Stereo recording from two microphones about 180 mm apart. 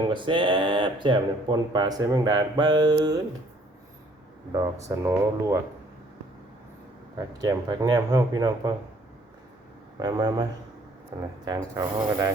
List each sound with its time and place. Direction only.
0.1 s speech: 25° right (ahead or behind)
4.5 s speech: 15° right (ahead or behind)
7.4 s speech: 20° right (ahead or behind)
10.0 s speech: 20° right (ahead or behind)